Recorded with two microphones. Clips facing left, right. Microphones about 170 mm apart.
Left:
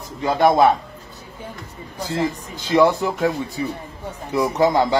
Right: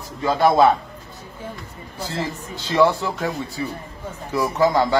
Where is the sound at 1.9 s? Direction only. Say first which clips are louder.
Left 4 dB; 15° left (ahead or behind).